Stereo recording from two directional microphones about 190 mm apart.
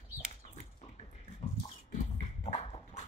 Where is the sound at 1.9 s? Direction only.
35° left (ahead or behind).